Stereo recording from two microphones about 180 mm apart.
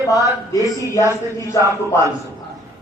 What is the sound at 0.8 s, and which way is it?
Speech, 15° left (ahead or behind).